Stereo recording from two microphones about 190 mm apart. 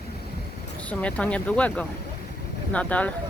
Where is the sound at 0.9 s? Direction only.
5° left (ahead or behind).